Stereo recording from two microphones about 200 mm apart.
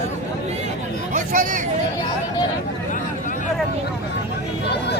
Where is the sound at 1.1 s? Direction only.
40° right (ahead or behind).